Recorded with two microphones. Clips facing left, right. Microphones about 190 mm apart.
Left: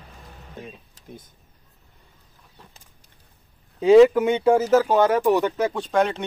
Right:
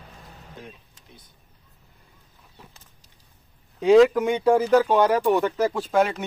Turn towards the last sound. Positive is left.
turn(degrees=-5)  # may be behind; listen again after turning